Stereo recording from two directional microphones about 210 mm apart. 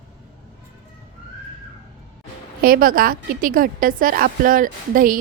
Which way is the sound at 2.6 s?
45° right (ahead or behind).